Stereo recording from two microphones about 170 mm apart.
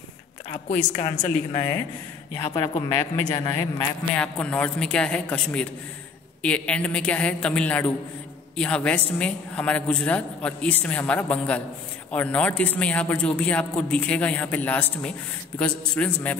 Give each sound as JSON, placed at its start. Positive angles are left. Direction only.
{"t": 0.9, "sound": "a woman's voice", "side_deg": 45}
{"t": 2.3, "sound": "a man's voice", "side_deg": 25}
{"t": 4.1, "sound": "speech", "side_deg": 5}